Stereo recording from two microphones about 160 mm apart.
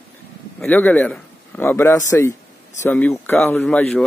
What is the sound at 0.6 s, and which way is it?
Speech, 10° left (ahead or behind).